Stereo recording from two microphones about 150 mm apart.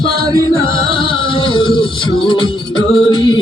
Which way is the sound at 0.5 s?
35° left (ahead or behind).